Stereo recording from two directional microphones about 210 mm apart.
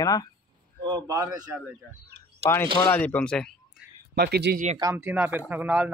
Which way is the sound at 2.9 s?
5° left (ahead or behind).